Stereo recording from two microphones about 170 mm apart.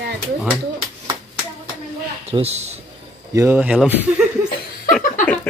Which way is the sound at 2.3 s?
40° right (ahead or behind).